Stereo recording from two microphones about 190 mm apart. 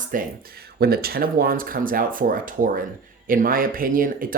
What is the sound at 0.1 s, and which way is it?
Speech, 45° right (ahead or behind).